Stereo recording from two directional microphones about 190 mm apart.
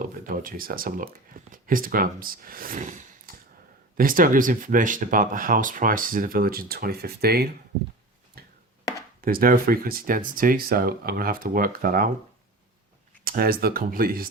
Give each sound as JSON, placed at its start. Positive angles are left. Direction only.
{"t": 0.0, "sound": "speech", "side_deg": -50}
{"t": 3.3, "sound": "a sound", "side_deg": -50}
{"t": 3.9, "sound": "speech", "side_deg": -45}
{"t": 8.4, "sound": "tick-tock", "side_deg": -50}
{"t": 9.2, "sound": "speech", "side_deg": -50}
{"t": 13.2, "sound": "speech", "side_deg": -50}